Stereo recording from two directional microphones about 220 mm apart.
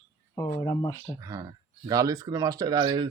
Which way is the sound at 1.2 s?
15° right (ahead or behind).